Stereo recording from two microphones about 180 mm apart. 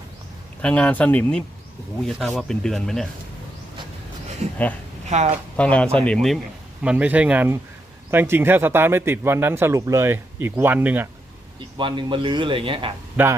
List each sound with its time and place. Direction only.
0.6 s speech: 5° left (ahead or behind)
4.4 s a sound: 40° right (ahead or behind)
5.0 s a woman's voice: 40° right (ahead or behind)
5.5 s speech: 5° left (ahead or behind); by 11.1 s 10° right (ahead or behind)
11.8 s a man's voice: 25° right (ahead or behind)
13.2 s speech: 10° right (ahead or behind)